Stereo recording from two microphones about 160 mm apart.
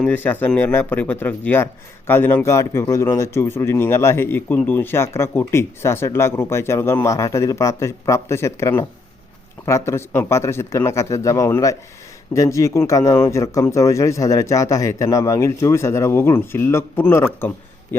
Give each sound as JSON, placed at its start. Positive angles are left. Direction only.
{"t": 0.0, "sound": "a man's voice", "side_deg": 10}